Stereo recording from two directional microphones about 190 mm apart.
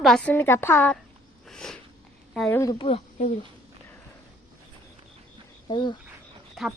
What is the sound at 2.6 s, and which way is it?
Speech, 20° left (ahead or behind).